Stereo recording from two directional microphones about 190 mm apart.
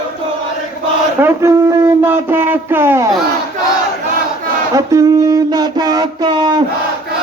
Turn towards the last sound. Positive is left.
turn(degrees=-25)  # may be behind; listen again after turning